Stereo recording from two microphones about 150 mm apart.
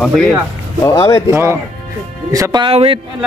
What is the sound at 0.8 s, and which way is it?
Speech, 25° left (ahead or behind).